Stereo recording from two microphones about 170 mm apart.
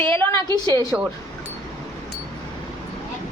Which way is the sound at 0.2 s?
10° left (ahead or behind).